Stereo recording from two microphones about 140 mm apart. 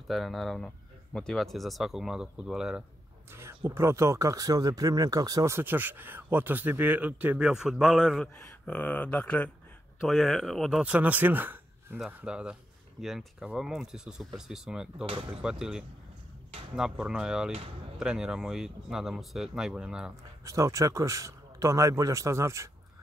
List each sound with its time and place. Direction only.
0.1 s speech: centre (ahead or behind)
3.3 s speech: 20° right (ahead or behind)
20.4 s speech: 25° right (ahead or behind)